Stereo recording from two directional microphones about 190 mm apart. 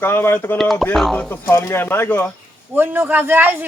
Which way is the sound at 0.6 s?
Centre (ahead or behind).